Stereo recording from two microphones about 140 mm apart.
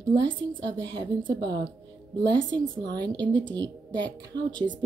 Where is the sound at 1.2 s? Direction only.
30° right (ahead or behind).